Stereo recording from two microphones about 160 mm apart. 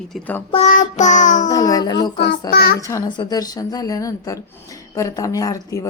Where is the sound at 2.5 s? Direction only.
70° left (ahead or behind).